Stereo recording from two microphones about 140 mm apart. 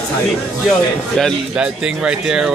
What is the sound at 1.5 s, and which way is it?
Speech, 5° right (ahead or behind).